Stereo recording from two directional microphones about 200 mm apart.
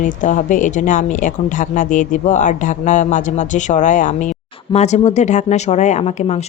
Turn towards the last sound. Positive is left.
turn(degrees=35)  # may be behind; listen again after turning